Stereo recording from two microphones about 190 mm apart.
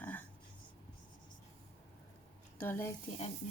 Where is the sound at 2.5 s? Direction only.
10° left (ahead or behind).